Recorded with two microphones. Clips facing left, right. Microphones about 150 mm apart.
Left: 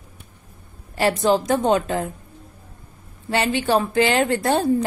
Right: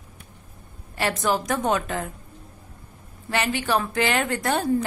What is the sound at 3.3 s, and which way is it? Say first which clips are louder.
A woman's voice: left 4 dB; 30° left (ahead or behind).